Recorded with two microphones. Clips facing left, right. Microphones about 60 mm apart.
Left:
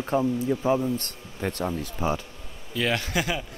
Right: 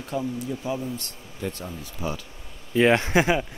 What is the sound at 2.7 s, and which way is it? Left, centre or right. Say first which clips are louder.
Speech: right 7 dB; right.